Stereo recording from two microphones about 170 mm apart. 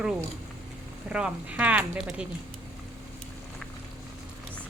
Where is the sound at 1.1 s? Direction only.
5° right (ahead or behind).